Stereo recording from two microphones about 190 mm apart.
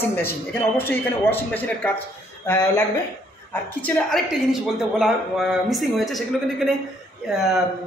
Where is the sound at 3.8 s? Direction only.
10° left (ahead or behind).